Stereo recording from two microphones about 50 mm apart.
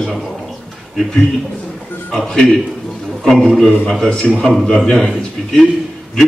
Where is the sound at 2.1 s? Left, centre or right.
Centre.